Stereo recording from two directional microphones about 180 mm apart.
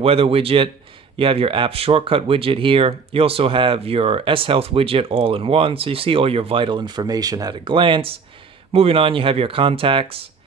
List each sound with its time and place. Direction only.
0.0 s speech: 30° right (ahead or behind)